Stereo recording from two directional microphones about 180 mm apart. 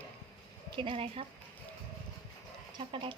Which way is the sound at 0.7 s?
30° right (ahead or behind).